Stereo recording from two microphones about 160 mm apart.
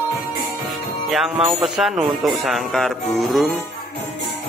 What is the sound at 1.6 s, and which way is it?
Speech, centre (ahead or behind).